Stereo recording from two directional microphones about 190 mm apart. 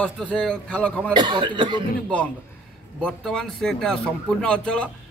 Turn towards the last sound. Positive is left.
turn(degrees=5)  # may be behind; listen again after turning